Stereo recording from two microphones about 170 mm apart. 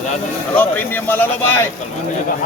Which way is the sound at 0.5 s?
10° left (ahead or behind).